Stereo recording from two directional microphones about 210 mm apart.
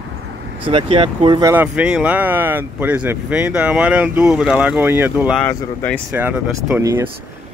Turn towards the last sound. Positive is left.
turn(degrees=-5)  # may be behind; listen again after turning